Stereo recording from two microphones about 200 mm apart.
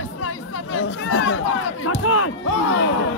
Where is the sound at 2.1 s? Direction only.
90° left.